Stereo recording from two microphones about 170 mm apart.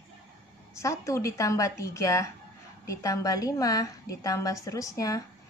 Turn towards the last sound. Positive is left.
turn(degrees=20)  # may be behind; listen again after turning